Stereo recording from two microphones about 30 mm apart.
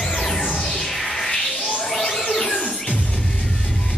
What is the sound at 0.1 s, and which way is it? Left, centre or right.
Music, centre.